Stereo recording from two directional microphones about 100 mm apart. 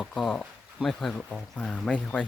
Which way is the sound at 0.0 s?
5° left (ahead or behind).